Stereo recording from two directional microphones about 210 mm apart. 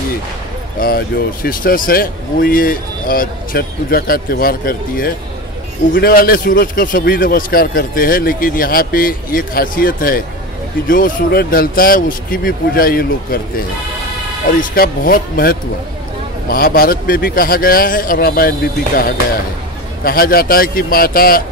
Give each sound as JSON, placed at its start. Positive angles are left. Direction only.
{"t": 0.7, "sound": "speech", "side_deg": 45}
{"t": 20.1, "sound": "speech", "side_deg": 45}